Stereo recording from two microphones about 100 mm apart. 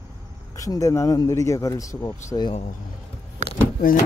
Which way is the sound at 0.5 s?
35° left (ahead or behind).